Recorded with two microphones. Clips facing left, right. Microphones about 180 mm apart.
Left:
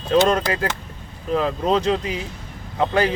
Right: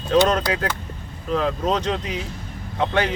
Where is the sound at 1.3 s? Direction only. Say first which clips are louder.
Left 2 dB; 5° left (ahead or behind).